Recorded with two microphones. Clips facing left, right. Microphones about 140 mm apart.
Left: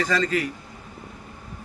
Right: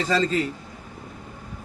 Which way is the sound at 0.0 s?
25° right (ahead or behind).